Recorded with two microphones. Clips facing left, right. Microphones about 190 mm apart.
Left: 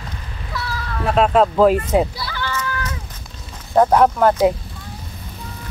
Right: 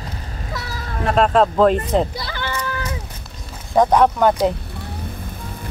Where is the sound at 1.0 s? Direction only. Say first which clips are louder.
Even; 5° left (ahead or behind).